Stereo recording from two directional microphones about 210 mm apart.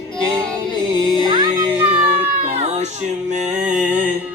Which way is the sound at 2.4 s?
30° right (ahead or behind).